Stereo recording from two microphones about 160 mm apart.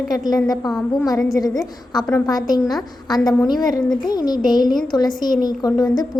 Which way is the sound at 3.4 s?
25° left (ahead or behind).